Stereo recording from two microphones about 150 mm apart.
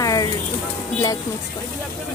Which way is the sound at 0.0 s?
25° left (ahead or behind).